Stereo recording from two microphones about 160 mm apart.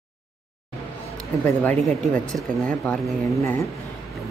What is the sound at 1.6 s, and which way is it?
Speech, 5° left (ahead or behind).